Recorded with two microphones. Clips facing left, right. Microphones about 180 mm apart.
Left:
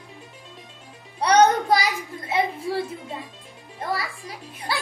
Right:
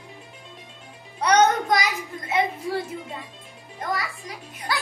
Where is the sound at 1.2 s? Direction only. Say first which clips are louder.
Left 2 dB; 30° left (ahead or behind).